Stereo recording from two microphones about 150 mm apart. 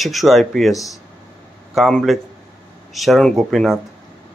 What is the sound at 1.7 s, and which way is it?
Speech, centre (ahead or behind).